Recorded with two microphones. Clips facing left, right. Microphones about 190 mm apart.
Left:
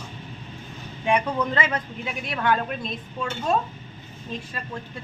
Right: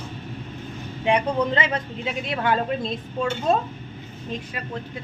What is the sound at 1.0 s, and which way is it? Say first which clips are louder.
Speech: right 2 dB; 20° right (ahead or behind).